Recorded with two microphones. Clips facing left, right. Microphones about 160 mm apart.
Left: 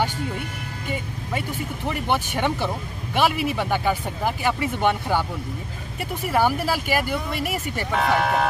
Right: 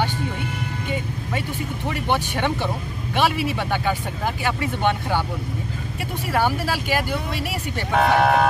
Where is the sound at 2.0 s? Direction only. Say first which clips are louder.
Right 1 dB; 5° left (ahead or behind).